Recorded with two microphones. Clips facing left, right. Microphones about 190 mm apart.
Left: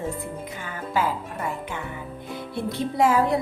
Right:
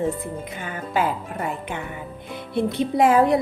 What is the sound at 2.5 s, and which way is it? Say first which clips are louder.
Speech: right 6 dB; 20° right (ahead or behind).